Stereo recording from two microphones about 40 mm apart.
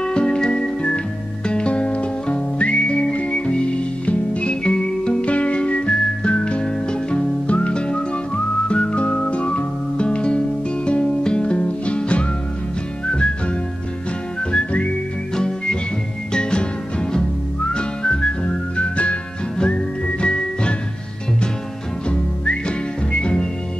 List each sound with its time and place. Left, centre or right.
0.0 s music: left
14.5 s whistling: left
15.3 s music: left
17.7 s whistling: left
19.6 s music: left